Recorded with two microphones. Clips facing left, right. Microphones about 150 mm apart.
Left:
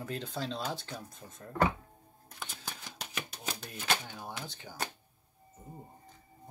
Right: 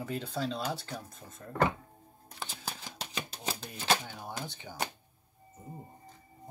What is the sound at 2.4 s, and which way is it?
Shuffling cards, 35° right (ahead or behind).